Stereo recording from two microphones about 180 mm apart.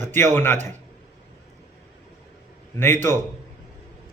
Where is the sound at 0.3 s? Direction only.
10° left (ahead or behind).